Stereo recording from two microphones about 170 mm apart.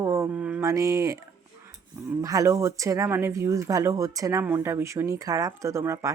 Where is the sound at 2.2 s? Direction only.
20° right (ahead or behind).